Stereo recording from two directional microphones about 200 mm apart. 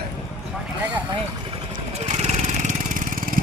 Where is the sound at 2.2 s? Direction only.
35° right (ahead or behind).